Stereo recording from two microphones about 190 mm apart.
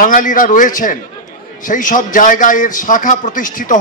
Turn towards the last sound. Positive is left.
turn(degrees=45)  # may be behind; listen again after turning